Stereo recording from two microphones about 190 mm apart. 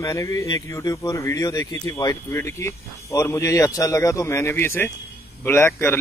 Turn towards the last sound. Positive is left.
turn(degrees=10)  # may be behind; listen again after turning